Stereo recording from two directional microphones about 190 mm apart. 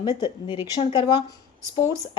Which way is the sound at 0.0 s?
25° left (ahead or behind).